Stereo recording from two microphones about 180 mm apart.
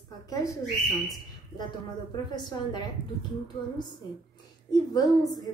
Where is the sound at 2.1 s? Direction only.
25° left (ahead or behind).